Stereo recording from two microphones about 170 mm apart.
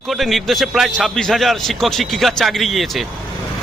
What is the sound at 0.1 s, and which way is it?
Speech, centre (ahead or behind).